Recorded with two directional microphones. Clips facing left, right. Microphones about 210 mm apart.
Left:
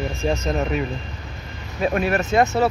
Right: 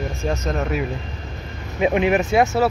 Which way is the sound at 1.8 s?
15° right (ahead or behind).